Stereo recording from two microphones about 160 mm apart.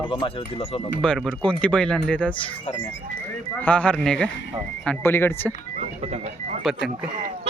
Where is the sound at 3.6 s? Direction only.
10° left (ahead or behind).